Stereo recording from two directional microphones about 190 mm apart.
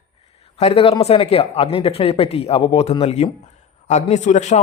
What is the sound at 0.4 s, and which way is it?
Speech, 30° left (ahead or behind).